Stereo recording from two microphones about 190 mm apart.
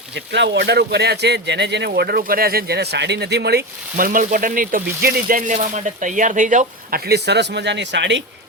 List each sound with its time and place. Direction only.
0.1 s speech: 65° right (ahead or behind)
1.9 s speech: 55° right (ahead or behind); by 8.2 s 70° right (ahead or behind)